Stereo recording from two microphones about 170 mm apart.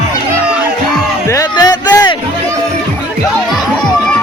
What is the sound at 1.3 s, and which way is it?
Music, 20° left (ahead or behind).